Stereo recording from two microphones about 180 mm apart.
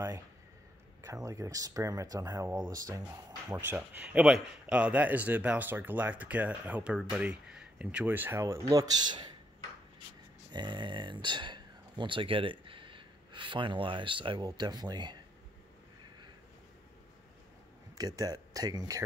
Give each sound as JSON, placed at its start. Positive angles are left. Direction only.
{"t": 1.0, "sound": "a man's voice", "side_deg": -15}
{"t": 3.4, "sound": "a man's voice", "side_deg": -5}
{"t": 10.5, "sound": "speech", "side_deg": -25}
{"t": 17.9, "sound": "speech", "side_deg": -20}